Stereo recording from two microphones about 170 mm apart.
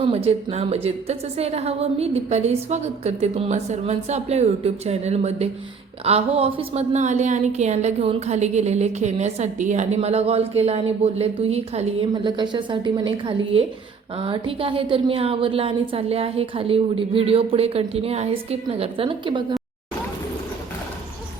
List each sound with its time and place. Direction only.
0.3 s a woman's voice: 35° right (ahead or behind)
12.1 s a woman's voice: 25° right (ahead or behind)